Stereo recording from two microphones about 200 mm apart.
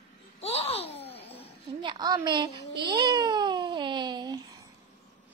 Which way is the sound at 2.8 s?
20° right (ahead or behind).